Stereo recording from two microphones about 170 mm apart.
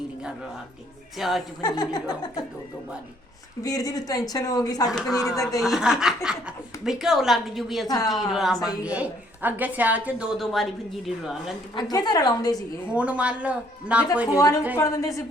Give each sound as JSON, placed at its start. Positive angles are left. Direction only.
{"t": 1.2, "sound": "a woman's voice", "side_deg": 0}
{"t": 1.6, "sound": "speech", "side_deg": 25}
{"t": 3.6, "sound": "speech", "side_deg": 20}
{"t": 4.9, "sound": "a woman's voice", "side_deg": 0}
{"t": 5.4, "sound": "speech", "side_deg": 20}
{"t": 5.6, "sound": "a woman's voice", "side_deg": 0}
{"t": 7.9, "sound": "speech", "side_deg": 20}
{"t": 8.3, "sound": "a woman's voice", "side_deg": 0}
{"t": 11.7, "sound": "speech", "side_deg": 25}
{"t": 12.9, "sound": "a woman's voice", "side_deg": -5}
{"t": 14.3, "sound": "speech", "side_deg": 20}